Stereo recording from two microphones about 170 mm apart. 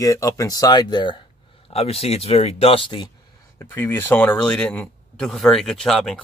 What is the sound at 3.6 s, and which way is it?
Speech, 15° left (ahead or behind).